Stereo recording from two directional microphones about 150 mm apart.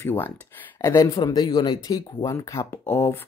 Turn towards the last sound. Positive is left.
turn(degrees=15)  # may be behind; listen again after turning